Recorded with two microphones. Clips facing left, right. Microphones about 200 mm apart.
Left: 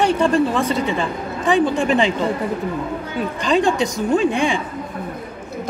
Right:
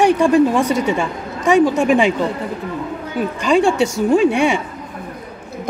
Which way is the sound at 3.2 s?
10° right (ahead or behind).